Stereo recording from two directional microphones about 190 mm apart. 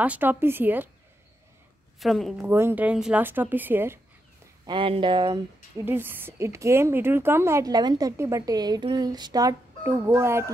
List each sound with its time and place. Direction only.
0.0 s a woman's voice: 10° right (ahead or behind)
2.0 s speech: centre (ahead or behind)
2.4 s a woman's voice: 10° right (ahead or behind)
4.6 s speech: 25° right (ahead or behind)
5.9 s a woman's voice: 10° right (ahead or behind)